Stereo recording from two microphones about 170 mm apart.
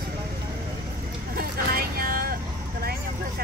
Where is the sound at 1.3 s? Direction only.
60° right (ahead or behind).